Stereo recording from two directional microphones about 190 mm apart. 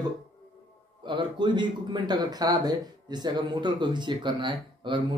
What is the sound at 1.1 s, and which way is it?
Speech, 25° right (ahead or behind).